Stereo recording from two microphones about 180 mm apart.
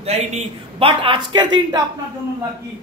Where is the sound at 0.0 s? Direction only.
35° right (ahead or behind).